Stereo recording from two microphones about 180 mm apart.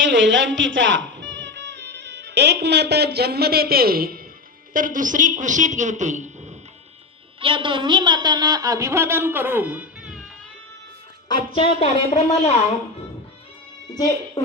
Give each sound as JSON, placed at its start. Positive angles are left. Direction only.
{"t": 0.0, "sound": "a woman's voice", "side_deg": -90}
{"t": 7.3, "sound": "a woman's voice", "side_deg": -30}
{"t": 11.3, "sound": "a woman's voice", "side_deg": 25}
{"t": 13.9, "sound": "speech", "side_deg": 20}